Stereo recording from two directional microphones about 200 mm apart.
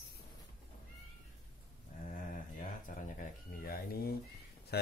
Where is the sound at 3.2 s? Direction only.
50° left (ahead or behind).